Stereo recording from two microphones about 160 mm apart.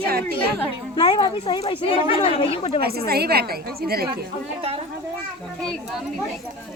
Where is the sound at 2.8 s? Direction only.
75° right (ahead or behind).